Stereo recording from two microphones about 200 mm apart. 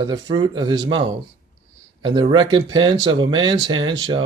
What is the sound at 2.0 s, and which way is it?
Speech, 20° right (ahead or behind).